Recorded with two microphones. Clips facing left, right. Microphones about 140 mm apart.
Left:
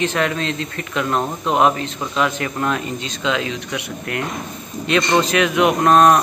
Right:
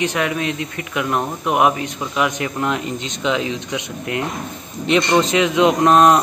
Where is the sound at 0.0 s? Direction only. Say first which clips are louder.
Even; 15° right (ahead or behind).